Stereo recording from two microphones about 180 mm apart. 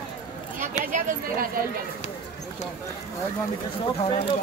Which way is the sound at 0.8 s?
50° right (ahead or behind).